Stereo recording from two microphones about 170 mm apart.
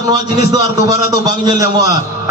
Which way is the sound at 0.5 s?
20° right (ahead or behind).